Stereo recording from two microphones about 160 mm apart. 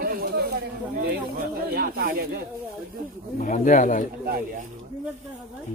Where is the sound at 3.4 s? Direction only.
55° left (ahead or behind).